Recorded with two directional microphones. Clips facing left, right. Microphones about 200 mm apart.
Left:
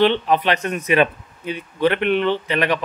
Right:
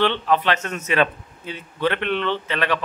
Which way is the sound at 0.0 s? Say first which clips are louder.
Left 3 dB; 15° left (ahead or behind).